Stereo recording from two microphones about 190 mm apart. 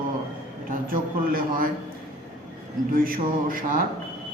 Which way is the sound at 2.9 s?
50° right (ahead or behind).